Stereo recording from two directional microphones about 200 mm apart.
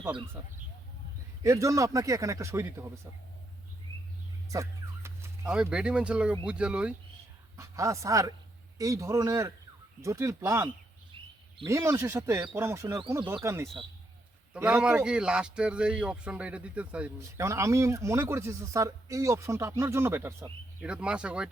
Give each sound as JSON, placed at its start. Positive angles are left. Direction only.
{"t": 1.4, "sound": "a man's voice", "side_deg": -15}
{"t": 4.4, "sound": "bird", "side_deg": -15}
{"t": 6.4, "sound": "speech", "side_deg": -5}
{"t": 7.5, "sound": "a man's voice", "side_deg": -15}